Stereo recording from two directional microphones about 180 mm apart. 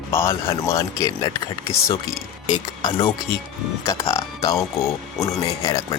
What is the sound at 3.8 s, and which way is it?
Speech, 15° left (ahead or behind).